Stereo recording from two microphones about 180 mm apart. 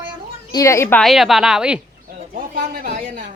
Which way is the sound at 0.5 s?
15° left (ahead or behind).